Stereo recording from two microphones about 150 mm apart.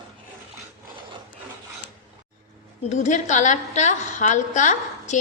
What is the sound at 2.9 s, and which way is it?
A woman's voice, 55° left (ahead or behind).